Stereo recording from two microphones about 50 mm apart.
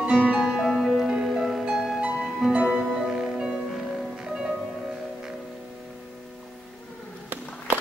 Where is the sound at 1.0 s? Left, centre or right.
Centre.